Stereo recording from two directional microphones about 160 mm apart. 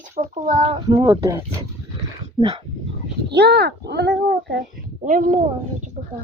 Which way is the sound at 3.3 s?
90° right.